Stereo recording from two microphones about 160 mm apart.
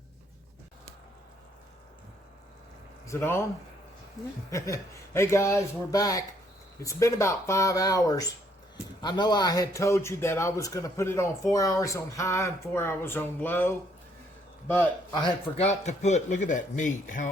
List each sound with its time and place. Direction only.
3.1 s speech: 15° left (ahead or behind)
4.5 s a man's voice: 20° left (ahead or behind)
15.1 s a man's voice: 30° left (ahead or behind)
15.6 s speech: 45° left (ahead or behind)